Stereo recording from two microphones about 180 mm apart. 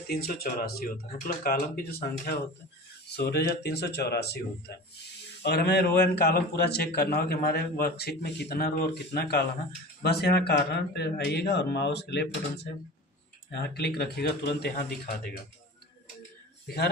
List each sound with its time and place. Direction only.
0.1 s a man's voice: 55° left (ahead or behind)
16.6 s a man's voice: 60° left (ahead or behind)